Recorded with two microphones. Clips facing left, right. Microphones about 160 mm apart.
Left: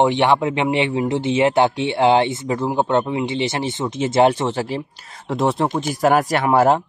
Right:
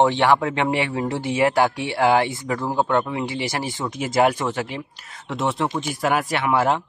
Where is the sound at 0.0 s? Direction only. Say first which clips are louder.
Left 1 dB; 20° left (ahead or behind).